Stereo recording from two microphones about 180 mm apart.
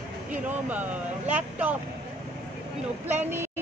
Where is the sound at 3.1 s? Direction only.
10° right (ahead or behind).